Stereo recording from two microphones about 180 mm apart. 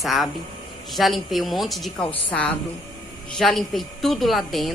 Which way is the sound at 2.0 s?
30° left (ahead or behind).